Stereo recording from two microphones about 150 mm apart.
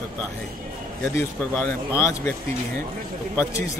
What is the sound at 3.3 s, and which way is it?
Speech, 20° left (ahead or behind).